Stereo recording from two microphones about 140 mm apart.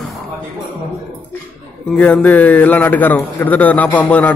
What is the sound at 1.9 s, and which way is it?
A man's voice, 10° left (ahead or behind).